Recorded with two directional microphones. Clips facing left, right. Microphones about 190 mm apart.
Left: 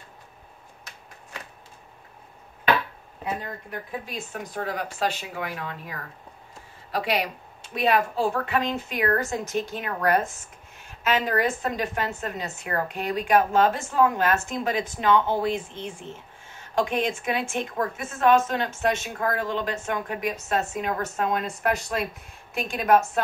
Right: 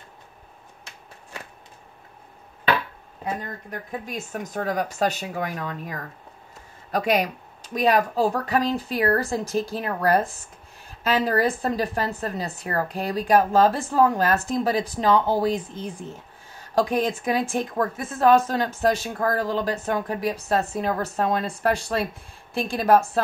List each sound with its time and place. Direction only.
4.0 s speech: 45° right (ahead or behind)